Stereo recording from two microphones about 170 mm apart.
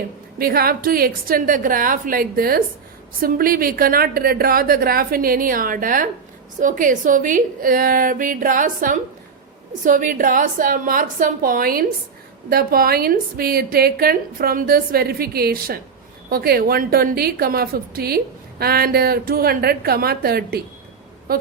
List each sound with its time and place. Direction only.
0.3 s a woman's voice: 60° right (ahead or behind)